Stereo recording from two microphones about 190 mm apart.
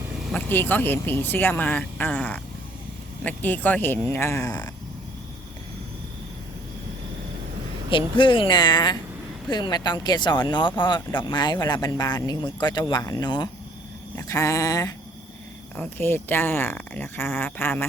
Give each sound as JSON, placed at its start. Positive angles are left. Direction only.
{"t": 0.3, "sound": "speech", "side_deg": 10}
{"t": 7.9, "sound": "speech", "side_deg": 25}